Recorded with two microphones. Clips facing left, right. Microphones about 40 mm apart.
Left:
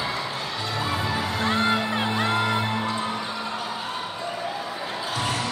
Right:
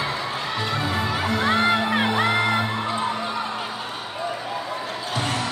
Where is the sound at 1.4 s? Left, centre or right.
Right.